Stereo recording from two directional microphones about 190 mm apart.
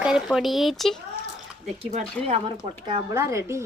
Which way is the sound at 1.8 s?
30° right (ahead or behind).